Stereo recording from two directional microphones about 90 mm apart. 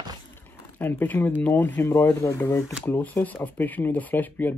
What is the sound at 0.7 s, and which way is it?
Speech, 20° left (ahead or behind).